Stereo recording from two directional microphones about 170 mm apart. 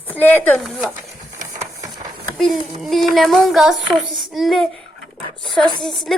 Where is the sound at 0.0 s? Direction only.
10° left (ahead or behind).